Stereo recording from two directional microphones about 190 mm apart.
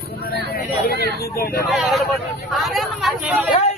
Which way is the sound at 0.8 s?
55° left (ahead or behind).